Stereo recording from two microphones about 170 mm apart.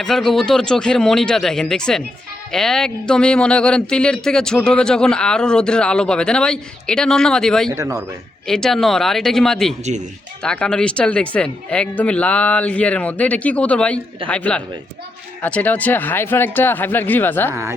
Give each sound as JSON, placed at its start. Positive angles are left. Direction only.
{"t": 0.0, "sound": "speech", "side_deg": 0}
{"t": 7.7, "sound": "a man's voice", "side_deg": -15}
{"t": 8.4, "sound": "speech", "side_deg": 5}
{"t": 9.8, "sound": "speech", "side_deg": -45}
{"t": 10.4, "sound": "speech", "side_deg": 5}
{"t": 17.5, "sound": "a man's voice", "side_deg": -15}